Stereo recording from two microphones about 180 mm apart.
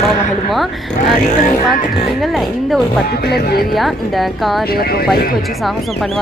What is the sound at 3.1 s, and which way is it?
Music, 60° left (ahead or behind).